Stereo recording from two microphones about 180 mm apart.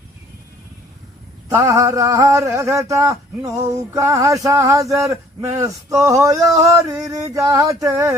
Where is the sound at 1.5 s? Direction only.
15° right (ahead or behind).